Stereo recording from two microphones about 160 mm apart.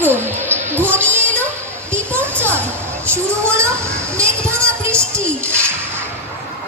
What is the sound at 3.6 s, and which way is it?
Children playing, 15° right (ahead or behind).